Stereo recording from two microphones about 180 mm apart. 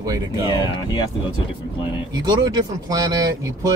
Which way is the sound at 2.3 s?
25° right (ahead or behind).